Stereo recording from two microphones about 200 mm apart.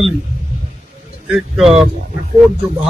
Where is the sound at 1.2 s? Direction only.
Centre (ahead or behind).